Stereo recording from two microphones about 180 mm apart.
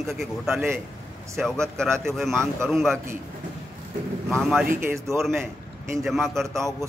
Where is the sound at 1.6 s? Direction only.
5° left (ahead or behind).